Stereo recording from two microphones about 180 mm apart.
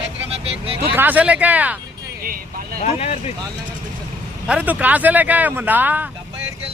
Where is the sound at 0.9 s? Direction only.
10° right (ahead or behind).